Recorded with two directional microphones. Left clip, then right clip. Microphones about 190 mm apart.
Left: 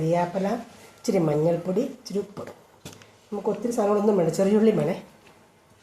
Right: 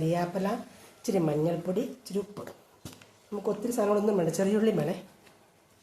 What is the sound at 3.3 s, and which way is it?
Speech, 20° right (ahead or behind).